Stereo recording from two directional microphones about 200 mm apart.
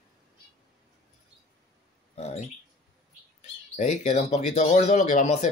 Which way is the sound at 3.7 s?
35° left (ahead or behind).